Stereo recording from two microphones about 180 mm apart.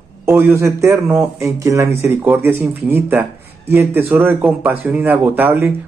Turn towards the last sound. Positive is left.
turn(degrees=-10)  # may be behind; listen again after turning